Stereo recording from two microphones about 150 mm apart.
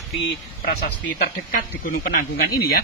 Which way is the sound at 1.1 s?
75° left (ahead or behind).